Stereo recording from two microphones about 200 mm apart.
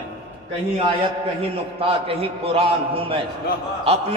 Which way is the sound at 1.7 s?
30° right (ahead or behind).